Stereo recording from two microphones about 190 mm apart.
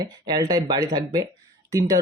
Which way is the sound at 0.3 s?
20° right (ahead or behind).